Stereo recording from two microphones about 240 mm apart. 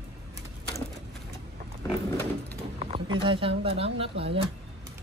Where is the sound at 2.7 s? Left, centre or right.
Right.